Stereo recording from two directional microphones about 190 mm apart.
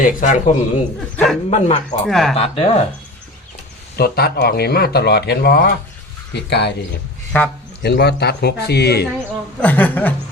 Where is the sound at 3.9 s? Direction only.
55° left (ahead or behind).